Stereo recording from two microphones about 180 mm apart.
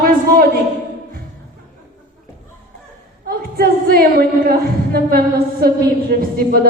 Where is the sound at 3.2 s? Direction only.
55° right (ahead or behind).